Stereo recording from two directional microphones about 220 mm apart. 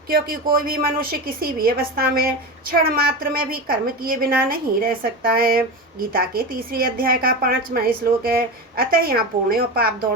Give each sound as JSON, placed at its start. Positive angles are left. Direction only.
{"t": 0.1, "sound": "a woman's voice", "side_deg": -40}